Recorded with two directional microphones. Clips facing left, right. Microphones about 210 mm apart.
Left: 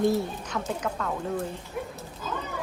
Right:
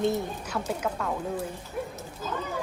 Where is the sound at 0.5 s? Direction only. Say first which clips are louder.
Even; 10° right (ahead or behind).